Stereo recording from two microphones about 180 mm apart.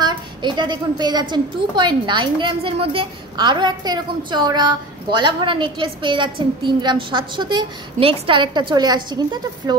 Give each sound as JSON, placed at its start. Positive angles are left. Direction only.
{"t": 0.0, "sound": "a child's voice", "side_deg": -25}